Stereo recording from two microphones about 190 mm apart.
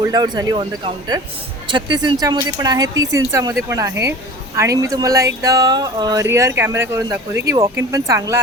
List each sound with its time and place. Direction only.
0.0 s speech: 20° right (ahead or behind)